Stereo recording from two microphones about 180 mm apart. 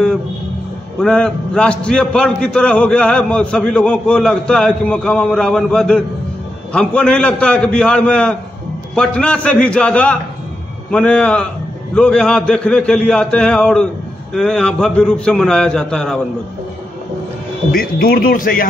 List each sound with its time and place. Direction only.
1.0 s a man's voice: 5° left (ahead or behind)
17.6 s speech: 55° left (ahead or behind)